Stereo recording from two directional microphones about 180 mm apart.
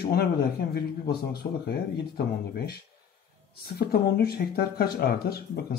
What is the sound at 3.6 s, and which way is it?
Speech, 60° left (ahead or behind).